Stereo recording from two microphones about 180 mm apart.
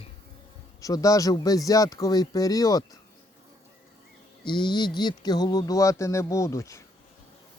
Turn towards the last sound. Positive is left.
turn(degrees=15)  # may be behind; listen again after turning